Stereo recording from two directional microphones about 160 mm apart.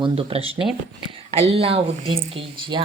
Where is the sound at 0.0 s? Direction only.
35° right (ahead or behind).